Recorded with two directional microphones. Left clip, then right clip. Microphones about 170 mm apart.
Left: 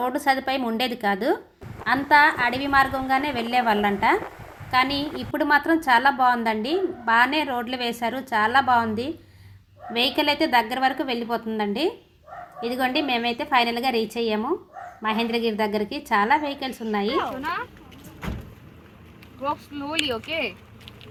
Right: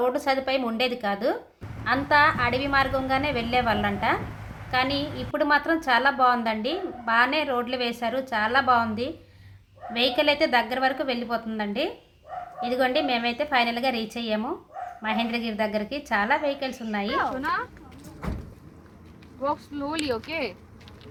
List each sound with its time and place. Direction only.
0.0 s a woman's voice: 10° left (ahead or behind)
19.4 s speech: 30° left (ahead or behind)
20.1 s speech: 40° left (ahead or behind)